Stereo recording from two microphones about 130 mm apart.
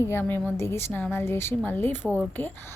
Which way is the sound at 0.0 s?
15° left (ahead or behind).